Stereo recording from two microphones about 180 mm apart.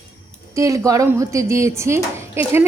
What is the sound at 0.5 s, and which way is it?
A woman's voice, 15° right (ahead or behind).